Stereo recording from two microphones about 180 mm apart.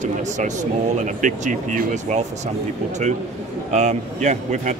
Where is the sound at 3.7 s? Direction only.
40° right (ahead or behind).